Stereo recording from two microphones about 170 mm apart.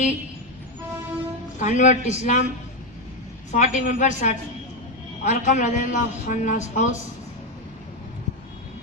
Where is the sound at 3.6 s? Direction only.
45° left (ahead or behind).